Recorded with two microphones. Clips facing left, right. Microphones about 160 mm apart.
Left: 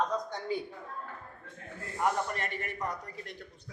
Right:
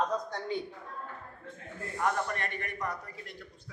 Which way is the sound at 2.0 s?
20° left (ahead or behind).